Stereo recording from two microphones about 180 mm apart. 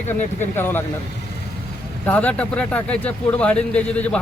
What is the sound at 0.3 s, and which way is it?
Speech, 10° left (ahead or behind).